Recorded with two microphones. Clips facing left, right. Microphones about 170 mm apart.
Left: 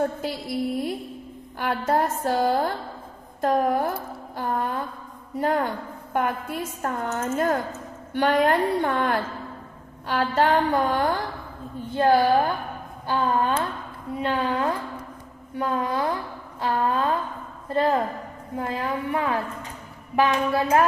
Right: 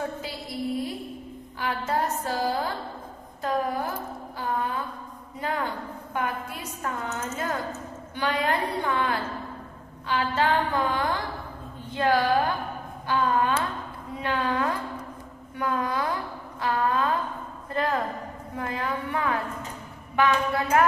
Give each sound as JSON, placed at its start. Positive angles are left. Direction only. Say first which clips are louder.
{"t": 1.6, "sound": "a woman's voice", "louder": "left 4 dB", "side_deg": 50}
{"t": 4.4, "sound": "a sound", "louder": "left 2 dB", "side_deg": 50}
{"t": 5.4, "sound": "a woman's voice", "louder": "left 6 dB", "side_deg": 45}
{"t": 12.0, "sound": "a woman's voice", "louder": "left 4 dB", "side_deg": 30}